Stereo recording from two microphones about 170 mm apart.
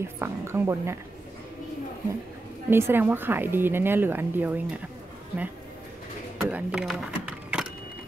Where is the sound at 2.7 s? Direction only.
15° right (ahead or behind).